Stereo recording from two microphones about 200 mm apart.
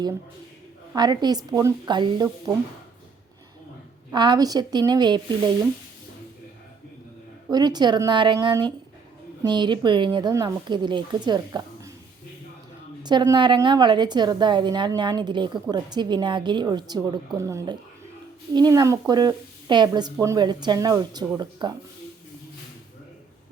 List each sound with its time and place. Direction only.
0.9 s speech: 20° right (ahead or behind)
4.1 s speech: 20° right (ahead or behind)
7.5 s speech: 20° right (ahead or behind)
13.0 s speech: 20° right (ahead or behind)